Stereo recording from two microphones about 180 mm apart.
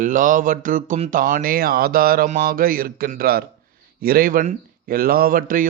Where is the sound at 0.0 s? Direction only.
45° right (ahead or behind).